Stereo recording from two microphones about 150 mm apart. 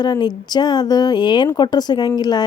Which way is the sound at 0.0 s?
30° left (ahead or behind).